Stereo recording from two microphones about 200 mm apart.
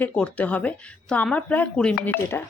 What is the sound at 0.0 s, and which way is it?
Speech, 5° left (ahead or behind).